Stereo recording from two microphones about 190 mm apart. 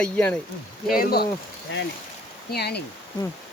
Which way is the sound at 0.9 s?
50° left (ahead or behind).